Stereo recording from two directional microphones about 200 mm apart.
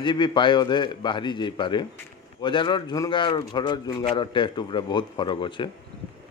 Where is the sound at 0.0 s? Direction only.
25° left (ahead or behind).